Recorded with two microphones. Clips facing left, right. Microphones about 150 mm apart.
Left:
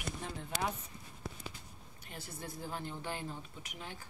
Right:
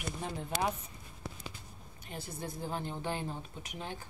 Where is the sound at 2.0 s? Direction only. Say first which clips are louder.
Right 5 dB; 20° right (ahead or behind).